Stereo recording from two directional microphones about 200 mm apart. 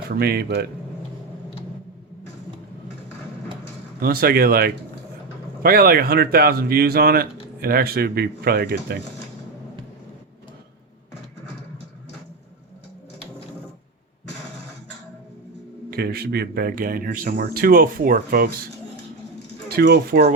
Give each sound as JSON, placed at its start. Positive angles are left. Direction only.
{"t": 0.1, "sound": "speech", "side_deg": -50}
{"t": 4.0, "sound": "speech", "side_deg": -50}
{"t": 15.9, "sound": "speech", "side_deg": -50}
{"t": 19.6, "sound": "speech", "side_deg": -50}